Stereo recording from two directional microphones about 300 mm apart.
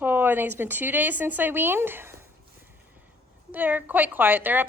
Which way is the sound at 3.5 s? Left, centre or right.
Centre.